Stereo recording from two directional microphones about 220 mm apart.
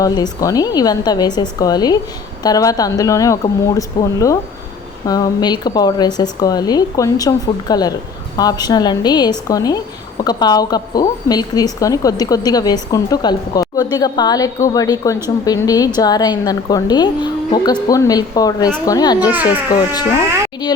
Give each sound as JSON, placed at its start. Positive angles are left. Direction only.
{"t": 0.0, "sound": "a woman's voice", "side_deg": 15}